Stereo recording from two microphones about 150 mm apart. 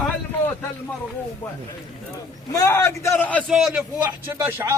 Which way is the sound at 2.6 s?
20° left (ahead or behind).